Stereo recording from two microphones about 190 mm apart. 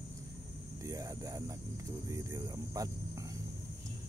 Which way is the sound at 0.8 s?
15° right (ahead or behind).